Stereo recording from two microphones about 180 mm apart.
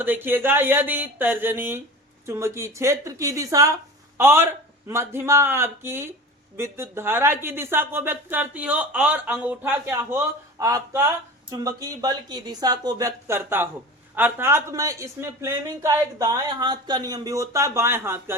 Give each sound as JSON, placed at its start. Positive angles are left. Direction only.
{"t": 0.0, "sound": "speech", "side_deg": -10}